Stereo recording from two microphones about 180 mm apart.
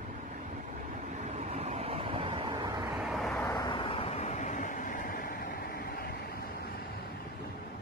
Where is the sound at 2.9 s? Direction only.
Centre (ahead or behind).